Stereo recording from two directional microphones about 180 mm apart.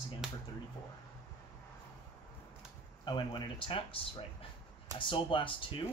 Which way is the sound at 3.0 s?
25° left (ahead or behind).